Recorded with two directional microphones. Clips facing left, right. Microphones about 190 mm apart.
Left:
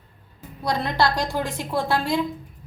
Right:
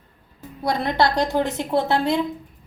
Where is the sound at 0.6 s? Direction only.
20° right (ahead or behind).